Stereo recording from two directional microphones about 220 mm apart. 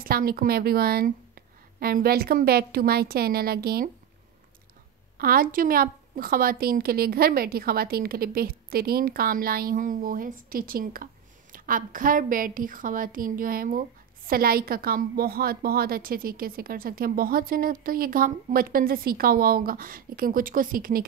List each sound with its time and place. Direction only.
0.0 s a woman's voice: 40° right (ahead or behind)
5.1 s a woman's voice: 40° right (ahead or behind)